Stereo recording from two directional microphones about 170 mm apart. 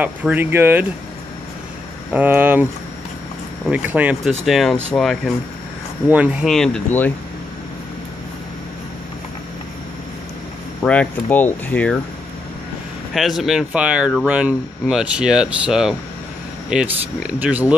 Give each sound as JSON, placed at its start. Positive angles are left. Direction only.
{"t": 0.0, "sound": "speech", "side_deg": -10}
{"t": 2.1, "sound": "speech", "side_deg": -10}
{"t": 10.8, "sound": "speech", "side_deg": 10}
{"t": 13.1, "sound": "speech", "side_deg": 0}